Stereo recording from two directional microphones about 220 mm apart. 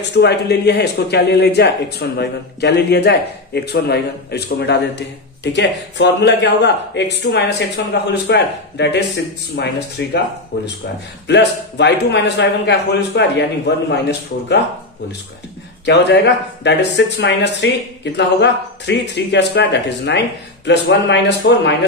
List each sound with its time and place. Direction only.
0.2 s speech: 50° left (ahead or behind)
15.8 s speech: 50° left (ahead or behind)